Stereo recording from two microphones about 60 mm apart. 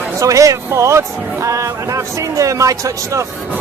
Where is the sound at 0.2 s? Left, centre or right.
Right.